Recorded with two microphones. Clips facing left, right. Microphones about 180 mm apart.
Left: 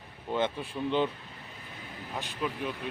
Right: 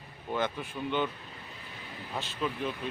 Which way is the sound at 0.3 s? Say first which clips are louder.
Left 2 dB; 30° left (ahead or behind).